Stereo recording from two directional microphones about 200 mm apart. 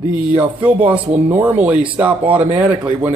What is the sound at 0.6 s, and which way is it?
A man's voice, 5° right (ahead or behind).